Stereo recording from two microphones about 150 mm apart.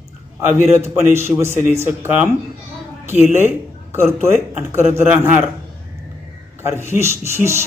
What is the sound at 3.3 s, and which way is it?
A man's voice, 15° right (ahead or behind).